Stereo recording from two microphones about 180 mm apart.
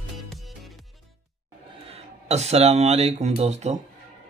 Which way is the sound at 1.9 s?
35° right (ahead or behind).